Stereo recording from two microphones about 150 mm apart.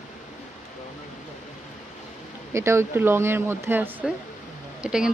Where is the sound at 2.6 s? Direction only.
20° right (ahead or behind).